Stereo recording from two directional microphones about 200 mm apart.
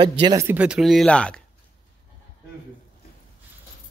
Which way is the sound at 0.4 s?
10° right (ahead or behind).